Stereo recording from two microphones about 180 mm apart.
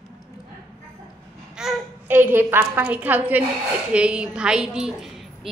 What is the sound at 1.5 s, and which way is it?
A woman's voice, 5° right (ahead or behind).